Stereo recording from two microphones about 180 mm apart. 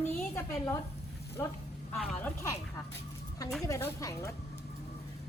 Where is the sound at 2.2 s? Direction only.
15° left (ahead or behind).